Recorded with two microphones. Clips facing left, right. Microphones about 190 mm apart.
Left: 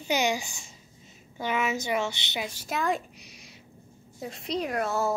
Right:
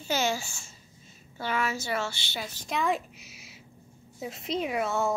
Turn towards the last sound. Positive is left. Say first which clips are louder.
# even
turn(degrees=0)  # may be behind; listen again after turning